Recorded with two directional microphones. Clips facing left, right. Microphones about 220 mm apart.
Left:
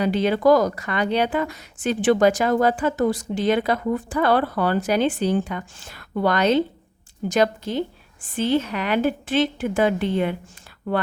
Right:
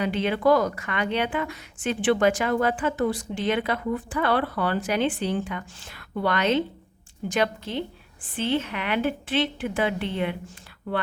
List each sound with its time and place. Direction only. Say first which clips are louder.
0.0 s a woman's voice: left 4 dB; 40° left (ahead or behind)